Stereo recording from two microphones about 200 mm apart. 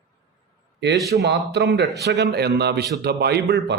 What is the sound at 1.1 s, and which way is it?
Speech, 50° right (ahead or behind).